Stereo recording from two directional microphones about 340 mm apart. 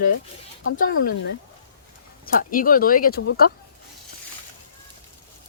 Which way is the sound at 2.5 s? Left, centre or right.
Left.